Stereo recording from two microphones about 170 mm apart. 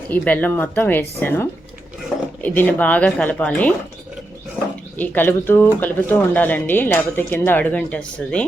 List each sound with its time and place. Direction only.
0.1 s speech: 10° left (ahead or behind)
4.9 s speech: 10° left (ahead or behind)